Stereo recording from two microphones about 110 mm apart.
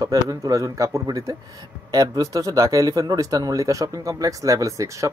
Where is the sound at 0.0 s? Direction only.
35° right (ahead or behind).